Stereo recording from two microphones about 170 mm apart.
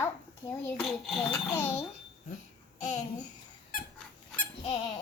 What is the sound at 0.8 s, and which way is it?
Cutlery, centre (ahead or behind).